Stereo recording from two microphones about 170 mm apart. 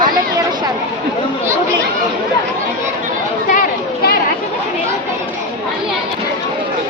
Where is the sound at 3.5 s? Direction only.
55° left (ahead or behind).